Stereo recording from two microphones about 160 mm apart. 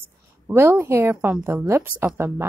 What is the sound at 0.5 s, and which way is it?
Speech, 15° right (ahead or behind).